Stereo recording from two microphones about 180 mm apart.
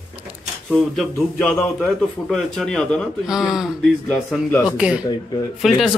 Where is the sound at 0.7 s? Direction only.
5° left (ahead or behind).